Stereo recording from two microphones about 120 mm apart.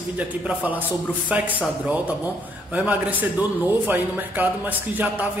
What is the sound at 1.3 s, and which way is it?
Speech, 10° right (ahead or behind).